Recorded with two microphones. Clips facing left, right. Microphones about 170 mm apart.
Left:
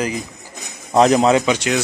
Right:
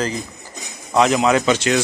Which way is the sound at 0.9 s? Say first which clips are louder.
Left 3 dB; 40° left (ahead or behind).